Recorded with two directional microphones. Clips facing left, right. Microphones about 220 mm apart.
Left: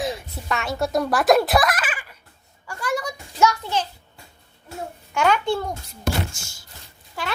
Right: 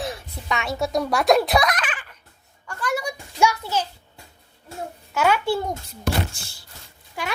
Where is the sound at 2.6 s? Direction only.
10° left (ahead or behind).